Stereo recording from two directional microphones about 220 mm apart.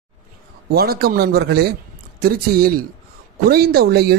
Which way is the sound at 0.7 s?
45° right (ahead or behind).